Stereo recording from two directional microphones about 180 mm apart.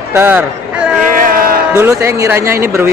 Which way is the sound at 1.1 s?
50° right (ahead or behind).